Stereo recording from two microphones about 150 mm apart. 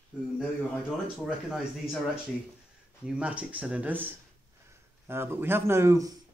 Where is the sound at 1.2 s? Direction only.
Centre (ahead or behind).